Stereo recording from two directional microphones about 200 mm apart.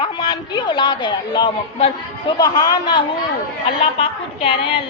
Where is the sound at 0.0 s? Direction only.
20° left (ahead or behind).